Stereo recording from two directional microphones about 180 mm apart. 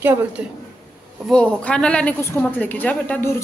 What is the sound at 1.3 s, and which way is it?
Speech, 5° left (ahead or behind).